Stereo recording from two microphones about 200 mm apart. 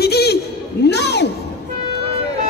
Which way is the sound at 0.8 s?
55° left (ahead or behind).